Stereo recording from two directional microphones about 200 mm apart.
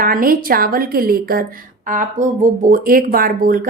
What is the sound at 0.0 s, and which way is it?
A woman's voice, 45° right (ahead or behind).